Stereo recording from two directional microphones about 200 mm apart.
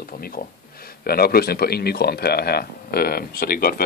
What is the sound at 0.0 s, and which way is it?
Speech, 45° left (ahead or behind).